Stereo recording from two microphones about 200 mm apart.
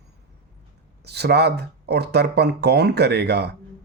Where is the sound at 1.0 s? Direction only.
55° right (ahead or behind).